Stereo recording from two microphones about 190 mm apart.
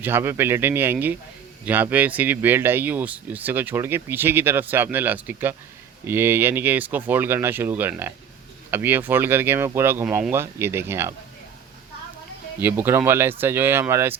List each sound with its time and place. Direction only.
0.0 s speech: 10° right (ahead or behind)
12.5 s speech: 10° right (ahead or behind)